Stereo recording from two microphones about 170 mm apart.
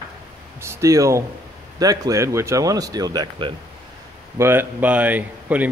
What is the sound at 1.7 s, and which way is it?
Speech, 20° right (ahead or behind).